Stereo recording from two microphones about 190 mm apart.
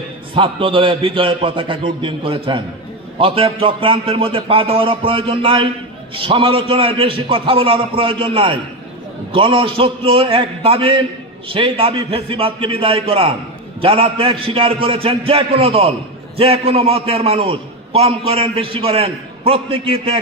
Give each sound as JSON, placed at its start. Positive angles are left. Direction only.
{"t": 0.3, "sound": "a man's voice", "side_deg": -25}